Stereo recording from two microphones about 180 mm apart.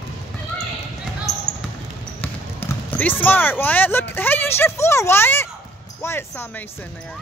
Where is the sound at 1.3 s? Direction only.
20° left (ahead or behind).